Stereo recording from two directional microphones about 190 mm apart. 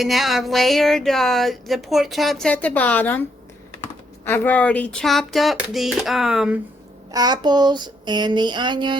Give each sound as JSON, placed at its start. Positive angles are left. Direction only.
{"t": 0.0, "sound": "speech", "side_deg": 0}
{"t": 4.3, "sound": "speech", "side_deg": 10}
{"t": 7.1, "sound": "a sound", "side_deg": -20}